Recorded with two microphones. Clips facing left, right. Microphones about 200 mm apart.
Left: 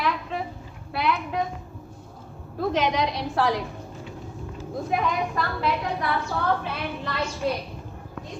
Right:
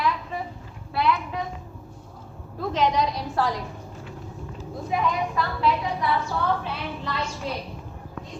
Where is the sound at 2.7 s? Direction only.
75° left (ahead or behind).